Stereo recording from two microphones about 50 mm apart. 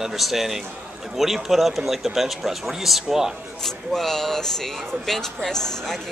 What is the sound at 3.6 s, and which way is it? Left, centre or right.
Speech, centre.